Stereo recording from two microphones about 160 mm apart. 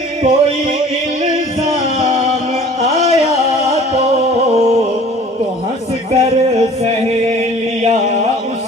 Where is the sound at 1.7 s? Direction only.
40° right (ahead or behind).